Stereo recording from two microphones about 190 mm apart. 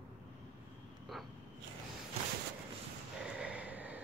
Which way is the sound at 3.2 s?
5° right (ahead or behind).